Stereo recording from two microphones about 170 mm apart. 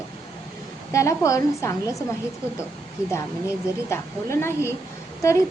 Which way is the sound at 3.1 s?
15° left (ahead or behind).